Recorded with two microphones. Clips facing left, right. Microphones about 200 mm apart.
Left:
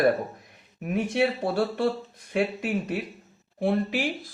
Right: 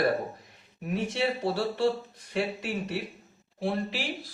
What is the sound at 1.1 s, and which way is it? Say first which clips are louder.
Speech: left 4 dB; 55° left (ahead or behind).